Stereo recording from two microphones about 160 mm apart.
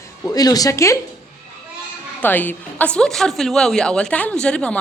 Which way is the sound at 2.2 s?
10° left (ahead or behind).